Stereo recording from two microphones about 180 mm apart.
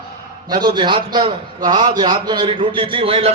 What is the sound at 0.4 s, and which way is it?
A man's voice, 25° right (ahead or behind).